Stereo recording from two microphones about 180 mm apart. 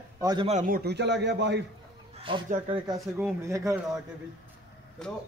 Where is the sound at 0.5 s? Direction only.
45° right (ahead or behind); by 1.6 s 75° right (ahead or behind).